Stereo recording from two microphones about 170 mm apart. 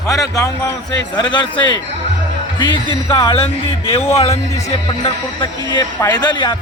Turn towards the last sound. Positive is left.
turn(degrees=25)  # may be behind; listen again after turning